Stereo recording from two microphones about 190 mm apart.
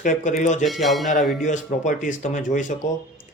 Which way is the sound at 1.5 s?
40° left (ahead or behind).